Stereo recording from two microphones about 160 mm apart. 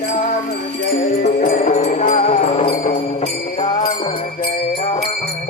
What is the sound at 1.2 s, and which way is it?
Music, 50° left (ahead or behind).